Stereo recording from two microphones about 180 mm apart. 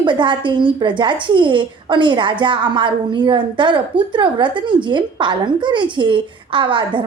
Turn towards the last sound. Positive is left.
turn(degrees=-30)  # may be behind; listen again after turning